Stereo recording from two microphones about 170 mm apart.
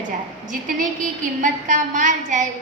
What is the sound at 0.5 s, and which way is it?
A woman's voice, 50° right (ahead or behind).